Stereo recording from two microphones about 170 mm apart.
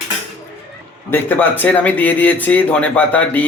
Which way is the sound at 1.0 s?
10° left (ahead or behind).